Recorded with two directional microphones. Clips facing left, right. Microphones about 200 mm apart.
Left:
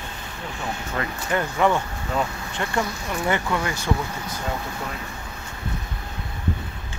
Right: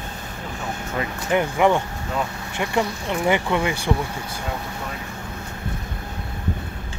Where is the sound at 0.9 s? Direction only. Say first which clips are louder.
Right 4 dB; 15° right (ahead or behind).